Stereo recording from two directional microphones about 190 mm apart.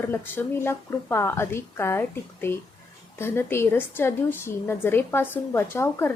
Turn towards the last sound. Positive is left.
turn(degrees=15)  # may be behind; listen again after turning